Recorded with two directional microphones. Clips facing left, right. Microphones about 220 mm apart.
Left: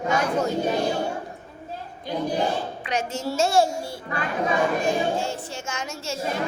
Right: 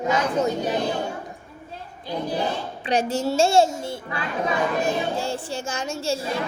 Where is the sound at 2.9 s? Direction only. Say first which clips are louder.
Right 7 dB; 35° right (ahead or behind).